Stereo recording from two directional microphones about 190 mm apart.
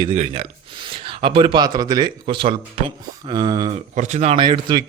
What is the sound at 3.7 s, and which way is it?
Speech, 40° right (ahead or behind).